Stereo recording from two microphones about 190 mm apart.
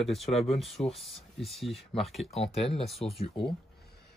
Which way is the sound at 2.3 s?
30° left (ahead or behind).